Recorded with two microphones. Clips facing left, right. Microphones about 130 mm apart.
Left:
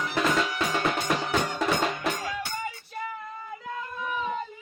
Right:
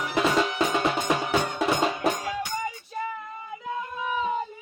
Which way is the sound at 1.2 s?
10° right (ahead or behind).